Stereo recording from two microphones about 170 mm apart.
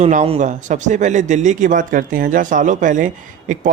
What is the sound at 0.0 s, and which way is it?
Speech, 40° right (ahead or behind).